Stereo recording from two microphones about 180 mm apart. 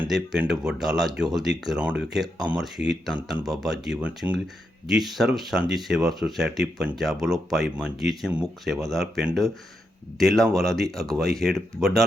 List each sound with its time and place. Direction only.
0.0 s speech: 5° right (ahead or behind)